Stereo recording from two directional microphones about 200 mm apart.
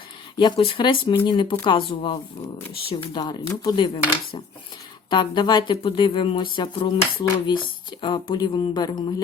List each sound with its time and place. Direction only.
0.3 s speech: 25° left (ahead or behind)
5.1 s speech: 20° left (ahead or behind)